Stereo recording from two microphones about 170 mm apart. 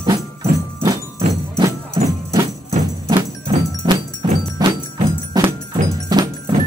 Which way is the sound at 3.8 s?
25° right (ahead or behind).